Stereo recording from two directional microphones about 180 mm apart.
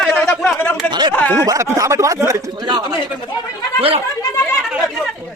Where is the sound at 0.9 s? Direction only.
25° right (ahead or behind).